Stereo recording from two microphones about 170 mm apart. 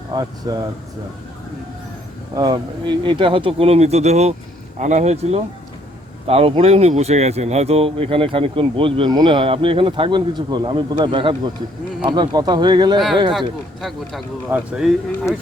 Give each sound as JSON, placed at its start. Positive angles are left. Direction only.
{"t": 0.1, "sound": "speech", "side_deg": -25}
{"t": 2.3, "sound": "speech", "side_deg": -25}
{"t": 14.5, "sound": "speech", "side_deg": -5}